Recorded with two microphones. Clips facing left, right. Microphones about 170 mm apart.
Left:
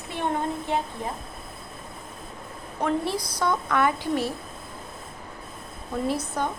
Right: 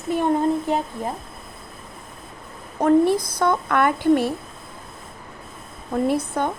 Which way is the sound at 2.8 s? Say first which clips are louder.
Right 9 dB; 45° right (ahead or behind).